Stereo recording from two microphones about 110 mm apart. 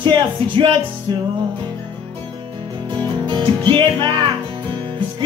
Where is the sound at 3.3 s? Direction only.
45° right (ahead or behind).